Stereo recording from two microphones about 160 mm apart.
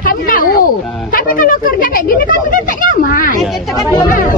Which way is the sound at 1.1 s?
60° left (ahead or behind).